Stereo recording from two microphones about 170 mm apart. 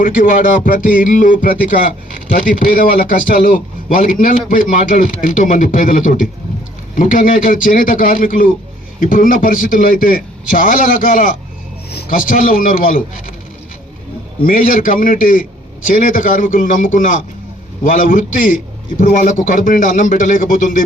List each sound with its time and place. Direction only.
0.0 s speech: 50° left (ahead or behind)
11.9 s speech: 60° left (ahead or behind)
14.4 s speech: 55° left (ahead or behind)